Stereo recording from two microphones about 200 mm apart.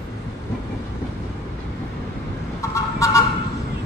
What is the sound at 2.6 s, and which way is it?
Vehicle, 15° left (ahead or behind).